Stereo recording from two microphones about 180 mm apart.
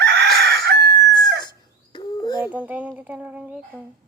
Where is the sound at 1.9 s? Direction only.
20° left (ahead or behind).